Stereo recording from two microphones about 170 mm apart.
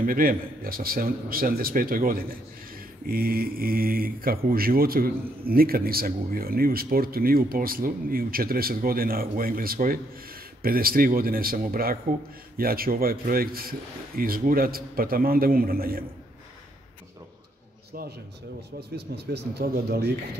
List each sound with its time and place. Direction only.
0.0 s speech: 55° right (ahead or behind)
18.8 s speech: 75° right (ahead or behind)